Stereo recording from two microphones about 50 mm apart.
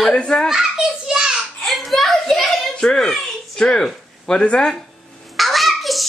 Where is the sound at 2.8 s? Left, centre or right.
Centre.